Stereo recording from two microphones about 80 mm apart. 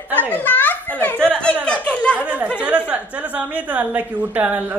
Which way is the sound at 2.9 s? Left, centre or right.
Centre.